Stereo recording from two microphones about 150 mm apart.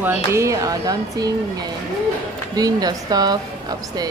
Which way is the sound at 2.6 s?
25° right (ahead or behind).